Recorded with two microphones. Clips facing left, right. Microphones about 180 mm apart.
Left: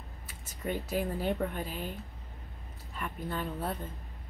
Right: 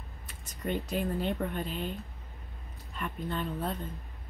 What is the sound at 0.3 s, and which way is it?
Speech, 5° left (ahead or behind).